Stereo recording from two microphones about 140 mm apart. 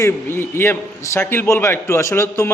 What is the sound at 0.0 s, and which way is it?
A man's voice, 15° left (ahead or behind).